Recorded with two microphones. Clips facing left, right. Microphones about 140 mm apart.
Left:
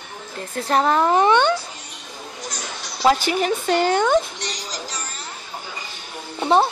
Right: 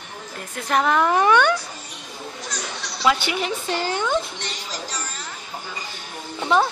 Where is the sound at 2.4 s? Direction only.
45° left (ahead or behind).